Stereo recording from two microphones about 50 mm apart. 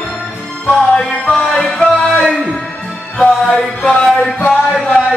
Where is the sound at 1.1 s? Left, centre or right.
Left.